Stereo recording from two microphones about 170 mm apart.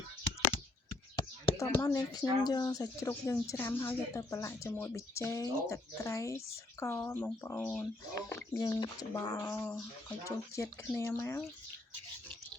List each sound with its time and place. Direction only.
1.1 s speech: 20° left (ahead or behind)